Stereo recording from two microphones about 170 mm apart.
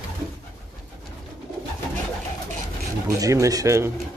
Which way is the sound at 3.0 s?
20° right (ahead or behind).